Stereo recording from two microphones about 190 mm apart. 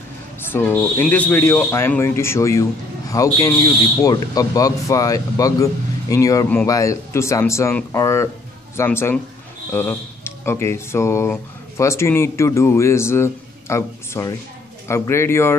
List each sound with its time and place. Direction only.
0.5 s speech: 10° left (ahead or behind)